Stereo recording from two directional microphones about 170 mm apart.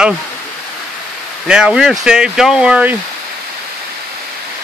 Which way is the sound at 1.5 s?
5° right (ahead or behind).